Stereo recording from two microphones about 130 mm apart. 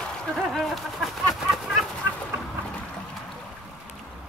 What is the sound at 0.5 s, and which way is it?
Bird, centre (ahead or behind).